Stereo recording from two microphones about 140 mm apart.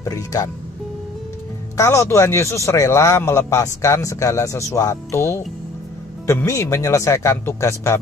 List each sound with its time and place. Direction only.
0.0 s a man's voice: 25° left (ahead or behind)
1.8 s a man's voice: 20° left (ahead or behind)